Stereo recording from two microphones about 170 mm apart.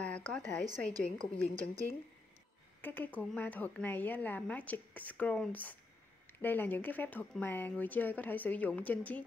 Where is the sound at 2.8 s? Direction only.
10° left (ahead or behind).